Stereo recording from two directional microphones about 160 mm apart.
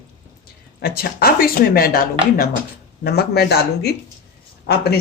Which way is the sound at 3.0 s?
80° left.